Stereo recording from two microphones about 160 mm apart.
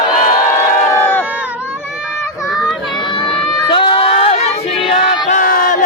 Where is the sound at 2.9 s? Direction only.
30° left (ahead or behind).